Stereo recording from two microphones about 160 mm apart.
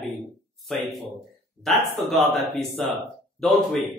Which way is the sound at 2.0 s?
Centre (ahead or behind).